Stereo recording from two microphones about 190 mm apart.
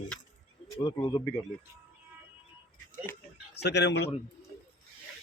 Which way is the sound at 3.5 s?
60° left (ahead or behind).